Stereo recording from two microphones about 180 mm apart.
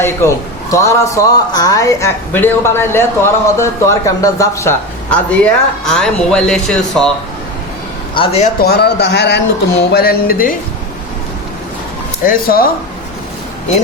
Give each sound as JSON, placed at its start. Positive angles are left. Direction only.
{"t": 0.0, "sound": "a man's voice", "side_deg": 15}
{"t": 8.1, "sound": "a man's voice", "side_deg": 30}
{"t": 8.6, "sound": "speech", "side_deg": 65}
{"t": 12.2, "sound": "speech", "side_deg": 55}